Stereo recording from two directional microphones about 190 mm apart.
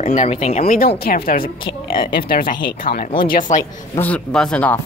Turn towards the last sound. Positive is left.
turn(degrees=5)  # may be behind; listen again after turning